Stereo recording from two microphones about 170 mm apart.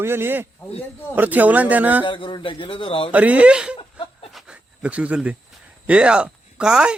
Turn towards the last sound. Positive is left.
turn(degrees=-5)  # may be behind; listen again after turning